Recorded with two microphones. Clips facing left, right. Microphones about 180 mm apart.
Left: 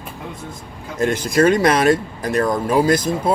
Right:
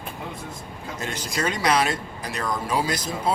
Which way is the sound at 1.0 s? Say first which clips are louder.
Left 13 dB; 55° left (ahead or behind).